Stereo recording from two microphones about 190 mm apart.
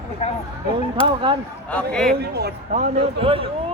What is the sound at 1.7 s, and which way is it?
Speech, 5° left (ahead or behind).